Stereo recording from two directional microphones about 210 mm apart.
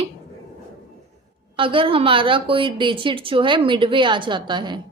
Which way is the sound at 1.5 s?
25° right (ahead or behind).